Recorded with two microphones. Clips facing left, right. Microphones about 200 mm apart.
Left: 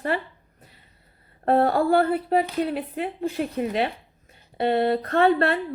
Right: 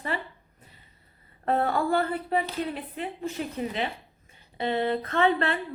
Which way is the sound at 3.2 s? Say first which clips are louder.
Left 6 dB; 40° left (ahead or behind).